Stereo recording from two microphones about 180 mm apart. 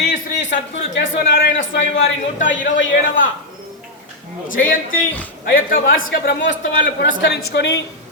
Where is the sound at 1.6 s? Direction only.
90° left.